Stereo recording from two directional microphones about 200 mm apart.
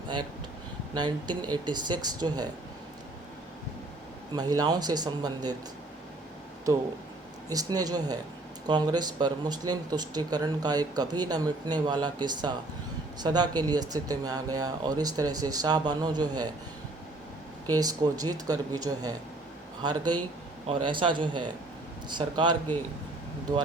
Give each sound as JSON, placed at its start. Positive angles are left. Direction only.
{"t": 0.9, "sound": "speech", "side_deg": -20}
{"t": 4.4, "sound": "speech", "side_deg": -20}
{"t": 7.5, "sound": "speech", "side_deg": -20}
{"t": 17.7, "sound": "speech", "side_deg": -20}